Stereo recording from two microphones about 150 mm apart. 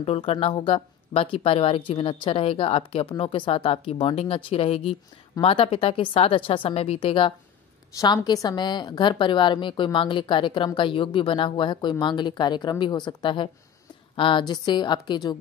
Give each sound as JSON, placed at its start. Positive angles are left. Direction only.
{"t": 0.0, "sound": "a woman's voice", "side_deg": 40}
{"t": 7.9, "sound": "a woman's voice", "side_deg": 25}